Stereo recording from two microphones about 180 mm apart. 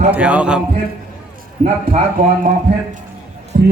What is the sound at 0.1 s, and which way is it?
Speech, 5° right (ahead or behind).